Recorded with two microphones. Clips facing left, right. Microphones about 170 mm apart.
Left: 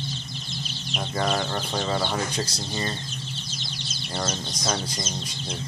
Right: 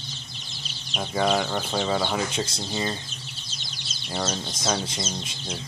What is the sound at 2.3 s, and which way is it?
Speech, 25° right (ahead or behind).